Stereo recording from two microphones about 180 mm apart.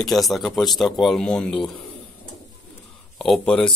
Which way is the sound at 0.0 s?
Centre (ahead or behind).